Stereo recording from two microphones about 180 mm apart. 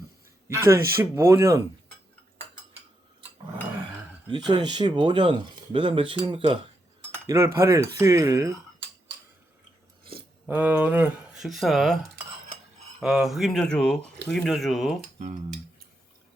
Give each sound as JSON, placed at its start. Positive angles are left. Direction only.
{"t": 0.4, "sound": "speech", "side_deg": -15}
{"t": 4.3, "sound": "speech", "side_deg": -25}
{"t": 7.1, "sound": "cutlery", "side_deg": -15}
{"t": 7.9, "sound": "speech", "side_deg": -15}
{"t": 10.4, "sound": "speech", "side_deg": -10}
{"t": 13.0, "sound": "speech", "side_deg": 0}